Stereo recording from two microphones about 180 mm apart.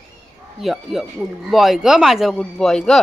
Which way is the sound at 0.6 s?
Centre (ahead or behind).